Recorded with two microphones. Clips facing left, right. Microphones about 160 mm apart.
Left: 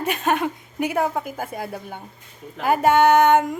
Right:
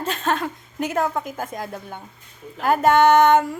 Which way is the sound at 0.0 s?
15° left (ahead or behind).